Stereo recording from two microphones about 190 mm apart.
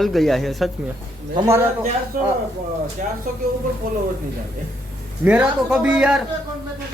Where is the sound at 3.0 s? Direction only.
40° right (ahead or behind).